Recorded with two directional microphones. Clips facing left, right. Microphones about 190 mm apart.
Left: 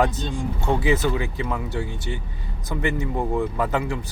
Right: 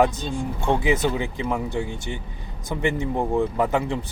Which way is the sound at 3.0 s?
25° right (ahead or behind).